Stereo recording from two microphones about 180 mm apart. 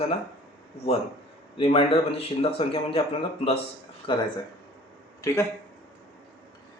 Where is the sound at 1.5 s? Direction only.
30° left (ahead or behind).